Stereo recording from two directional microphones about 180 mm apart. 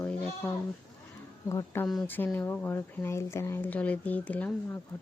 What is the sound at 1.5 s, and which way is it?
Speech, 15° left (ahead or behind).